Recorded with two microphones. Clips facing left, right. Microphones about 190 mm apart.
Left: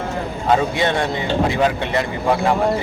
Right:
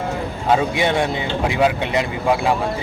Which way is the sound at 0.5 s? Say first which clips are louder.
Even; 15° right (ahead or behind).